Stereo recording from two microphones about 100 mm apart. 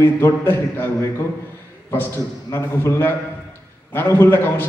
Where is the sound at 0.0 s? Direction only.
20° left (ahead or behind).